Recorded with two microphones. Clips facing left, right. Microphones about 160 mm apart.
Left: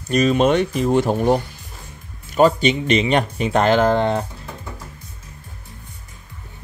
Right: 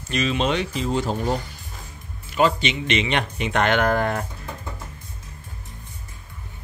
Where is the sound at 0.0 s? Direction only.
40° left (ahead or behind); by 1.4 s 60° left (ahead or behind).